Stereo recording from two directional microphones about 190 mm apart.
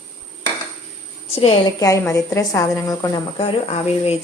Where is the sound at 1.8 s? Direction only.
15° left (ahead or behind).